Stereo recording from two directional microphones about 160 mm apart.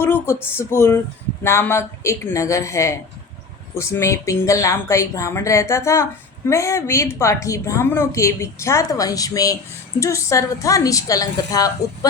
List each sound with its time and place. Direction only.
0.0 s a woman's voice: 15° left (ahead or behind)